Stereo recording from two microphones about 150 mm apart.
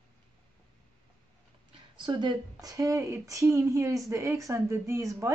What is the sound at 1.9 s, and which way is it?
A woman's voice, 30° right (ahead or behind).